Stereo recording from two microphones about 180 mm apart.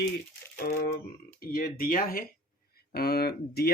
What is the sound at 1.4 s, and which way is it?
Speech, 55° left (ahead or behind).